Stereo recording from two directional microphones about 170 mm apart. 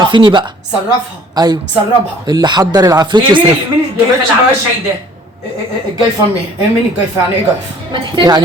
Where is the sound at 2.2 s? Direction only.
25° right (ahead or behind).